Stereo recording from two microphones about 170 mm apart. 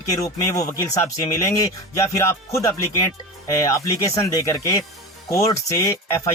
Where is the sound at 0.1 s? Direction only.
20° left (ahead or behind).